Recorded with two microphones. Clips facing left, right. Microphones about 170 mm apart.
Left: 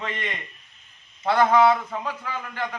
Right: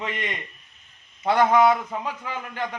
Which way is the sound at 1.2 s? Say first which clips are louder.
Even; 15° right (ahead or behind).